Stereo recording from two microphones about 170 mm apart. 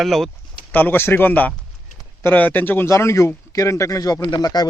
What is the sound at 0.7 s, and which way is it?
Speech, 10° left (ahead or behind).